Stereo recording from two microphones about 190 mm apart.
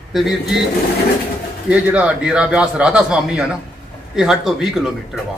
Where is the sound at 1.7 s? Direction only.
5° right (ahead or behind).